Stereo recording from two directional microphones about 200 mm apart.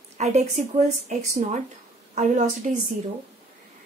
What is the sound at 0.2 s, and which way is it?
Speech, 35° right (ahead or behind).